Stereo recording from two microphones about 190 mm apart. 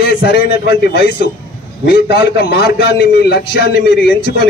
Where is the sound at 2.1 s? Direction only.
60° left (ahead or behind).